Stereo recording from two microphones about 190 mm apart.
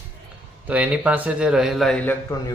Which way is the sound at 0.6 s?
5° right (ahead or behind).